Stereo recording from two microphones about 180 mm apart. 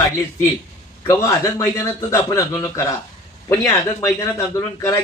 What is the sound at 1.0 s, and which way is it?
A man's voice, 15° left (ahead or behind).